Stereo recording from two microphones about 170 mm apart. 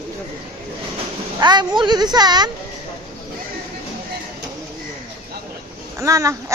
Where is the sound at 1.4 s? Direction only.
25° right (ahead or behind).